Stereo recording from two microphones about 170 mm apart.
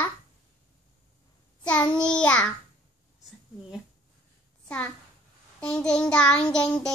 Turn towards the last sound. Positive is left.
turn(degrees=5)  # may be behind; listen again after turning